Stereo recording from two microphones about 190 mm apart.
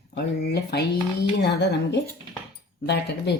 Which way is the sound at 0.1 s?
60° left (ahead or behind).